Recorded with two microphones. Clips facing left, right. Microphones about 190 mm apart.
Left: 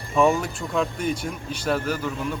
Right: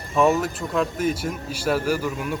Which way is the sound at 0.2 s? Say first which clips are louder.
Right 1 dB; centre (ahead or behind).